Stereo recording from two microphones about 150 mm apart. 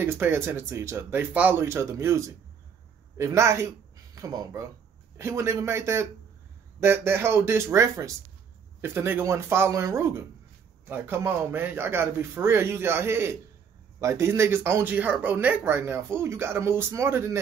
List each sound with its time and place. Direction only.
0.0 s speech: 15° right (ahead or behind)